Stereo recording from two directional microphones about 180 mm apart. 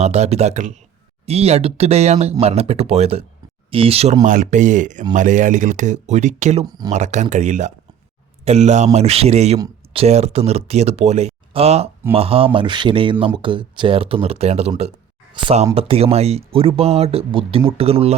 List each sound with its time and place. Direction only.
0.0 s speech: 35° right (ahead or behind)
6.7 s speech: 20° right (ahead or behind)
6.9 s speech: 40° right (ahead or behind)